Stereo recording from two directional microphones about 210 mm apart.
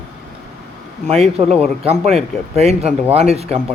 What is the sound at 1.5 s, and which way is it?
Speech, 30° right (ahead or behind).